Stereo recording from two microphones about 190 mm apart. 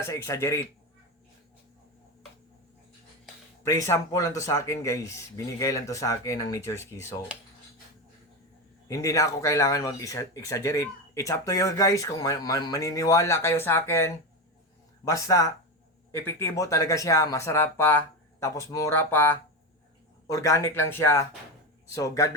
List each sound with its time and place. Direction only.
0.0 s speech: 15° left (ahead or behind)
3.6 s speech: 15° left (ahead or behind)
8.9 s speech: 15° left (ahead or behind)